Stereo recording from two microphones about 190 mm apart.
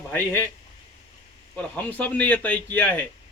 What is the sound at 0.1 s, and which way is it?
Speech, 15° left (ahead or behind).